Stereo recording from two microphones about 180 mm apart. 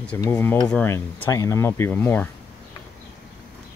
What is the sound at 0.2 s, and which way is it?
Speech, 10° left (ahead or behind).